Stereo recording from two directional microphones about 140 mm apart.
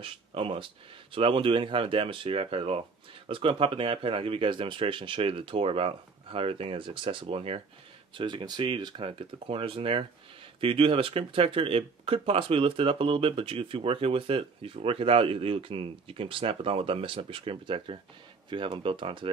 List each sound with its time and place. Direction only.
0.0 s speech: 40° right (ahead or behind)